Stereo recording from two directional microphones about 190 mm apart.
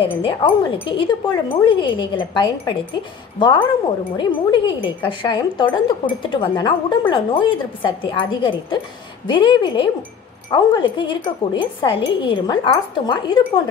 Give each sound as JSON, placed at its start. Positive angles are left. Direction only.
{"t": 0.0, "sound": "a woman's voice", "side_deg": 25}